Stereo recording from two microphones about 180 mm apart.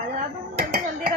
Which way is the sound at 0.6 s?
60° right (ahead or behind).